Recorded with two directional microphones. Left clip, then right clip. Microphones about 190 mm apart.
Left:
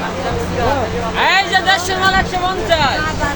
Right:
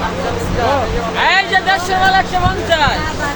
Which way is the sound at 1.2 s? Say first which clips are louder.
Even; 25° left (ahead or behind).